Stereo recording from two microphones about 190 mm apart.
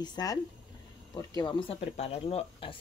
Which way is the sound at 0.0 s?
20° left (ahead or behind).